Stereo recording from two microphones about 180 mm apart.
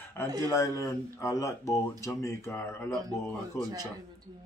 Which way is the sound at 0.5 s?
20° left (ahead or behind).